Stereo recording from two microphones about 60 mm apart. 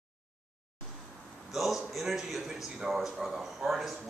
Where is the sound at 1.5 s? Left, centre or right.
Centre.